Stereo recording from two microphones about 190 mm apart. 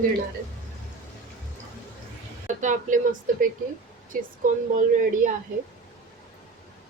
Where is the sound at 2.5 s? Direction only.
40° right (ahead or behind).